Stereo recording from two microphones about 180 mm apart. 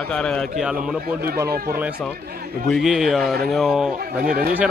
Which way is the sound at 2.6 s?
Centre (ahead or behind).